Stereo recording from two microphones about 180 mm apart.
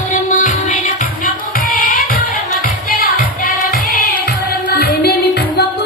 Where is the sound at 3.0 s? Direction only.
50° left (ahead or behind).